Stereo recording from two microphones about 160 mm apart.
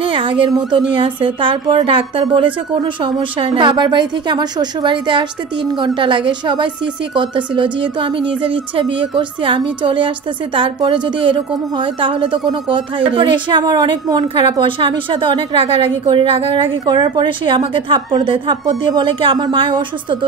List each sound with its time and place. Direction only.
0.0 s speech: 30° right (ahead or behind)